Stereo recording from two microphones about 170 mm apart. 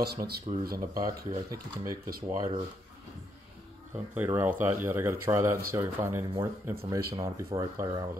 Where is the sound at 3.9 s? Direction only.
10° right (ahead or behind).